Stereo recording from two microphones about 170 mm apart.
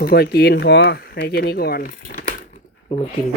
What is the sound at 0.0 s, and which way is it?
Speech, 65° left (ahead or behind).